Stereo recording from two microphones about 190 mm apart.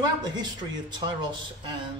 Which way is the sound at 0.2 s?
20° right (ahead or behind).